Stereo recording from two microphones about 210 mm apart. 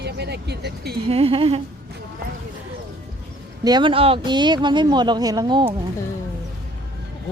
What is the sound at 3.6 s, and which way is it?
Speech, 20° right (ahead or behind).